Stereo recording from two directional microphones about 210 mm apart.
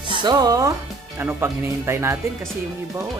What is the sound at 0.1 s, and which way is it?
Speech, 20° right (ahead or behind).